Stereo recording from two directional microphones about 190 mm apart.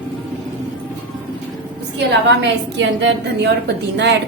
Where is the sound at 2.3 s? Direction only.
70° right (ahead or behind).